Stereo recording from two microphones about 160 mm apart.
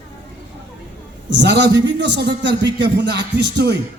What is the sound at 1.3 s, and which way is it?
A man's voice, 90° right.